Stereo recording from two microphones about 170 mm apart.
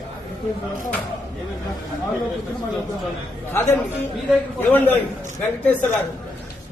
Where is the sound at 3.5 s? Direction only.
15° left (ahead or behind).